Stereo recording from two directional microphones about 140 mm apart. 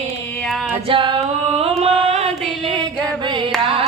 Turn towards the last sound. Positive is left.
turn(degrees=-45)  # may be behind; listen again after turning